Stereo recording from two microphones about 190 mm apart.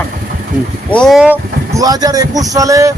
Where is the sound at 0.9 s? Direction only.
Centre (ahead or behind).